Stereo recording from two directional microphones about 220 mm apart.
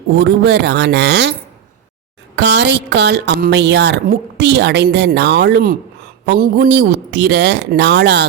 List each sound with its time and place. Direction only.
0.2 s a woman's voice: 50° right (ahead or behind)
2.3 s a woman's voice: 50° right (ahead or behind)